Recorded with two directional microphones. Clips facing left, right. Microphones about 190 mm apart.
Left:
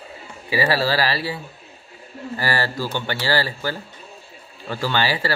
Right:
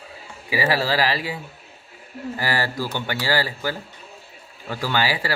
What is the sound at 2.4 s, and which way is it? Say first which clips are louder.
Speech: left 1 dB; 15° right (ahead or behind).